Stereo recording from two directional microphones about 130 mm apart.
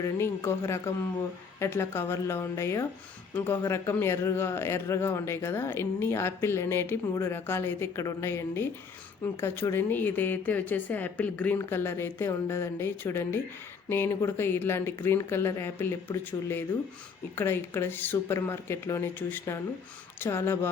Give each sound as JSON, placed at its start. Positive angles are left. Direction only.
{"t": 0.0, "sound": "a man's voice", "side_deg": 20}